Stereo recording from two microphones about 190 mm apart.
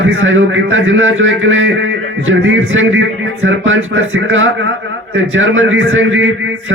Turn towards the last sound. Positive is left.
turn(degrees=-90)